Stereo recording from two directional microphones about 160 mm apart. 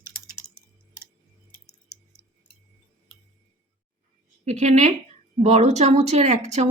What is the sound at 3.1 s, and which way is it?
Music, 5° left (ahead or behind).